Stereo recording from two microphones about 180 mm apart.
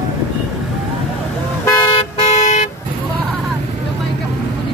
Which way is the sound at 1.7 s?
25° left (ahead or behind).